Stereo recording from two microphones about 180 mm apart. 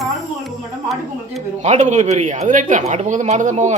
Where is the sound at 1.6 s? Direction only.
40° right (ahead or behind).